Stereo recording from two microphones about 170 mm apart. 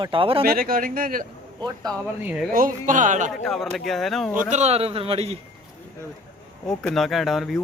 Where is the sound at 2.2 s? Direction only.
5° right (ahead or behind).